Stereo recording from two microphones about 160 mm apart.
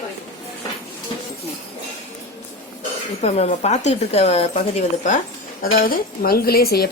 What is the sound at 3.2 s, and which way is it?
A woman's voice, 40° left (ahead or behind).